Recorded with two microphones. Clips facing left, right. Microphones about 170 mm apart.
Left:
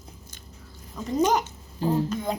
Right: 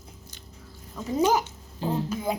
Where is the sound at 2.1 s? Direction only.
5° right (ahead or behind).